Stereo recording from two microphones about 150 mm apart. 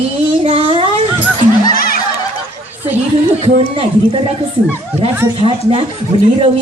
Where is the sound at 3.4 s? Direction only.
40° right (ahead or behind).